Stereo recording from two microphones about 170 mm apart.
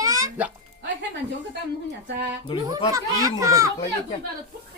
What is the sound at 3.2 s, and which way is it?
Speech, 20° right (ahead or behind).